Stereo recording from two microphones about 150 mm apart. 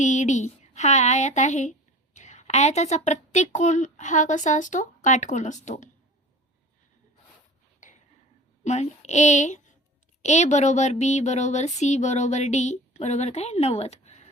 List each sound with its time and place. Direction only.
0.0 s speech: 50° left (ahead or behind)
8.6 s speech: 50° left (ahead or behind)